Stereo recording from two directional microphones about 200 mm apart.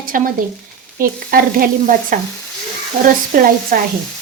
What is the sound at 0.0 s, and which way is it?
Speech, 45° right (ahead or behind).